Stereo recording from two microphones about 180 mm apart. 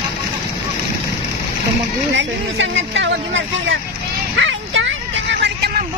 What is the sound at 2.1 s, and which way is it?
Speech, 90° right.